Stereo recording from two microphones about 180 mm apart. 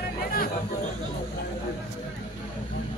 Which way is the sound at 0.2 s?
55° left (ahead or behind).